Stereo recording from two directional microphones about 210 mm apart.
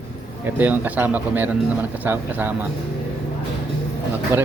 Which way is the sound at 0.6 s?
10° right (ahead or behind).